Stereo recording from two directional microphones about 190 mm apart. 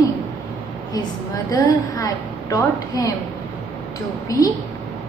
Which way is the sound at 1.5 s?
20° left (ahead or behind).